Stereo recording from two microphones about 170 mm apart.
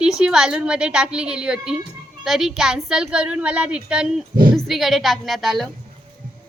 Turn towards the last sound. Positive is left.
turn(degrees=0)  # may be behind; listen again after turning